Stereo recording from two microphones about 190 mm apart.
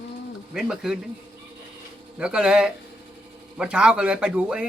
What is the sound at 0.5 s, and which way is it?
Speech, 5° right (ahead or behind).